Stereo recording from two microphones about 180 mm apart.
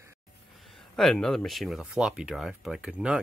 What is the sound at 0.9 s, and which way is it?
Speech, 5° left (ahead or behind).